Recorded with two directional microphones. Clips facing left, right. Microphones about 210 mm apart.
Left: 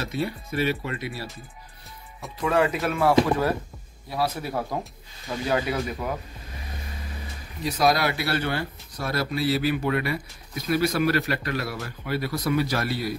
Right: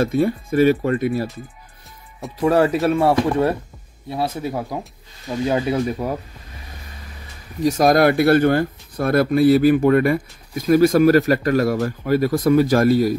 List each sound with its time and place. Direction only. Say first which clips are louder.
0.0 s speech: right 11 dB; 50° right (ahead or behind)
2.4 s speech: right 7 dB; 35° right (ahead or behind); by 4.7 s 15° right (ahead or behind)
5.5 s speech: right 5 dB; 30° right (ahead or behind)
7.6 s speech: right 8 dB; 45° right (ahead or behind)